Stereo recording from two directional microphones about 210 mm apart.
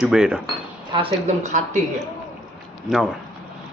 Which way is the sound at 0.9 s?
30° right (ahead or behind).